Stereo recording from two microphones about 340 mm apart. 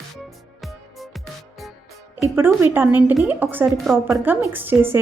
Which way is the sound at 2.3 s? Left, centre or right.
Centre.